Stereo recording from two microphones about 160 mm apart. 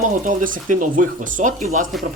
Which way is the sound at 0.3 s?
55° right (ahead or behind).